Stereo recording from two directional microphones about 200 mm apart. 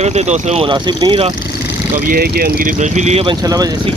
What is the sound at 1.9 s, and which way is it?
Speech, 50° right (ahead or behind).